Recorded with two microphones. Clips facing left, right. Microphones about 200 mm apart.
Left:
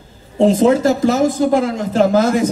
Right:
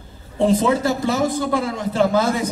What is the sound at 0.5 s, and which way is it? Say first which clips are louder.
A man's voice: left 5 dB; 45° left (ahead or behind).